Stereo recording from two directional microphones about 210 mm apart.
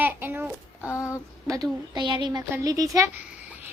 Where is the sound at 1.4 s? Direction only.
15° right (ahead or behind).